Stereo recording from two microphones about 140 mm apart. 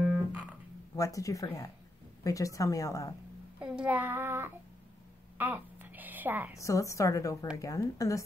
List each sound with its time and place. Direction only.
0.3 s music: 10° right (ahead or behind)
0.9 s a woman's voice: 25° left (ahead or behind)
3.6 s child singing: 10° right (ahead or behind)
5.4 s a sound: 15° right (ahead or behind)
6.6 s a woman's voice: 25° left (ahead or behind)